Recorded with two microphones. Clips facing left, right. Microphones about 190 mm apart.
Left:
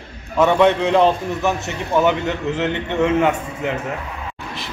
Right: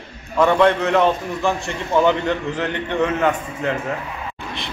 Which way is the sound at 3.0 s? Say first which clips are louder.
Left 3 dB; 10° left (ahead or behind).